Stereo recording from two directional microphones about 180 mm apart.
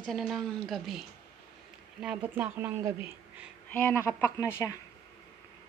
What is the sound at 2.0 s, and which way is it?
Speech, 10° right (ahead or behind).